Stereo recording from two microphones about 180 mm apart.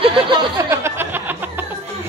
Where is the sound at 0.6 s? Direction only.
15° right (ahead or behind).